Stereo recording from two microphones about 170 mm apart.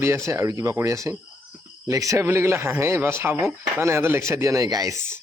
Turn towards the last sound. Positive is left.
turn(degrees=-20)  # may be behind; listen again after turning